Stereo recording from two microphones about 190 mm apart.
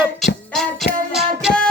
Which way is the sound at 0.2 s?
Centre (ahead or behind).